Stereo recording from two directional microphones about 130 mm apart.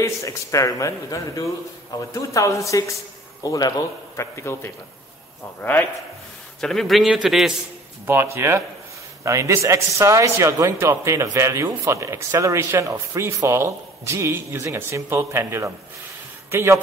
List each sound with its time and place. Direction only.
0.0 s a man's voice: 25° left (ahead or behind)
6.6 s a man's voice: 5° left (ahead or behind)
8.4 s speech: 20° right (ahead or behind)